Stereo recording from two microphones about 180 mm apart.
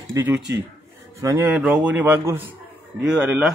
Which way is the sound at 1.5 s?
5° right (ahead or behind).